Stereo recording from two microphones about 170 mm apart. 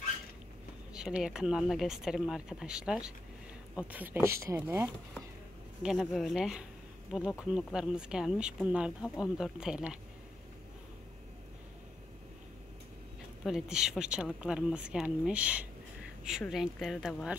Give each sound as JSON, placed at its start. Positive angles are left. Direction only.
{"t": 0.9, "sound": "speech", "side_deg": -5}
{"t": 5.8, "sound": "speech", "side_deg": 0}
{"t": 13.4, "sound": "speech", "side_deg": 0}